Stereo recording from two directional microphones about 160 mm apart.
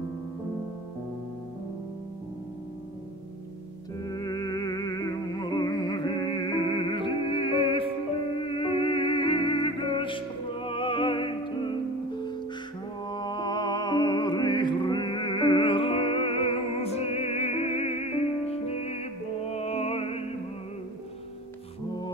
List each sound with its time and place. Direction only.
4.0 s music: 25° left (ahead or behind)
13.1 s music: 25° left (ahead or behind)